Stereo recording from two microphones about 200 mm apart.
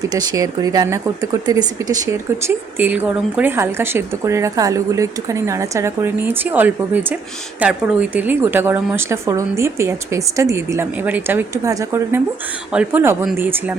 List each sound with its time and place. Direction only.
0.1 s a woman's voice: 20° right (ahead or behind)